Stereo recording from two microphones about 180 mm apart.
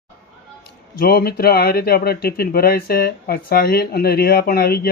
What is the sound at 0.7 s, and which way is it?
Speech, 60° left (ahead or behind).